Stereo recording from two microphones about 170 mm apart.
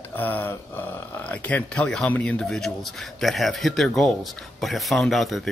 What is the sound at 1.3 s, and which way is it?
Speech, 5° left (ahead or behind).